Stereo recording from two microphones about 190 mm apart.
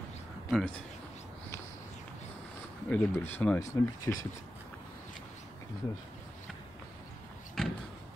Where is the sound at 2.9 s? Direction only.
10° left (ahead or behind).